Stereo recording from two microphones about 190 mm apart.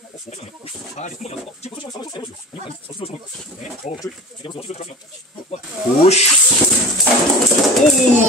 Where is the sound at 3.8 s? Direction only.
40° left (ahead or behind).